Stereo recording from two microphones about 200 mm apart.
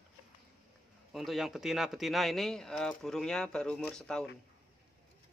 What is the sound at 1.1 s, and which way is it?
Speech, centre (ahead or behind).